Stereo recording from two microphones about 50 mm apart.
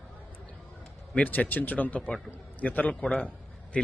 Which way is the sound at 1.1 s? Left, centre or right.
Left.